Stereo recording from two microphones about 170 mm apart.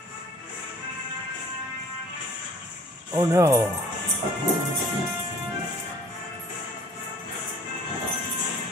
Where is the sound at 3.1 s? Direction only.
15° right (ahead or behind).